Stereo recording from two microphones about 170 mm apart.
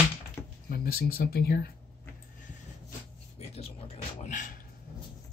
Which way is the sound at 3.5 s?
35° left (ahead or behind).